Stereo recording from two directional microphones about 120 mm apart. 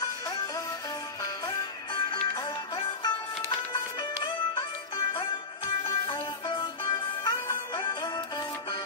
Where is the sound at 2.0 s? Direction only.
40° left (ahead or behind).